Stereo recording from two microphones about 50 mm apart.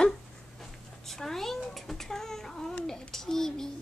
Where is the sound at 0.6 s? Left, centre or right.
Centre.